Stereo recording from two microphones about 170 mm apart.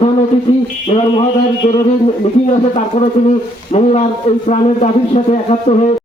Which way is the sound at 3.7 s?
40° left (ahead or behind).